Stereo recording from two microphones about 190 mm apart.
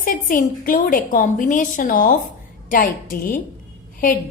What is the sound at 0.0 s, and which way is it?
A woman's voice, 45° left (ahead or behind).